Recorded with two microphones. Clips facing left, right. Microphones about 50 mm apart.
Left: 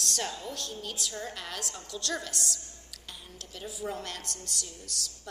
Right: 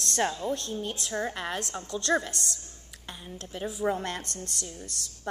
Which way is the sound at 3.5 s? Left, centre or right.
Right.